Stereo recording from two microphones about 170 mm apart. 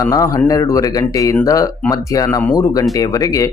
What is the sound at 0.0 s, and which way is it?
Speech, 20° left (ahead or behind).